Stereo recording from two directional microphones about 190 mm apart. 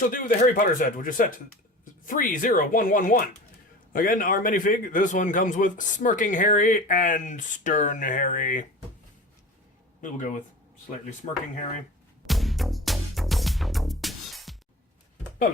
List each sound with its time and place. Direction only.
0.0 s a man's voice: 45° left (ahead or behind)
10.0 s a man's voice: 45° left (ahead or behind)
12.2 s music: centre (ahead or behind)